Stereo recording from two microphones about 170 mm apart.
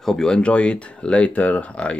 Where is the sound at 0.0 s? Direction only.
5° left (ahead or behind).